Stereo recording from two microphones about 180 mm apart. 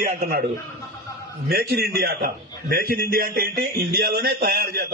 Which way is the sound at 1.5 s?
60° right (ahead or behind).